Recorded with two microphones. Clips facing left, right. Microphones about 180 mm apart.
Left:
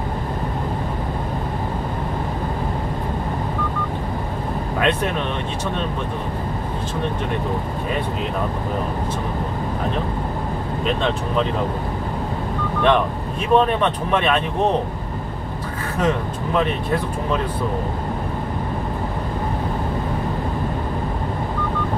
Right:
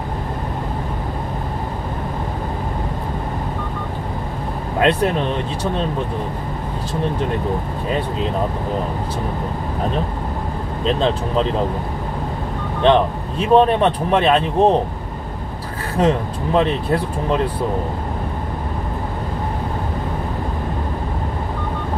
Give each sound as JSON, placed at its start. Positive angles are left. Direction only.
{"t": 12.8, "sound": "speech", "side_deg": -30}
{"t": 16.0, "sound": "speech", "side_deg": -30}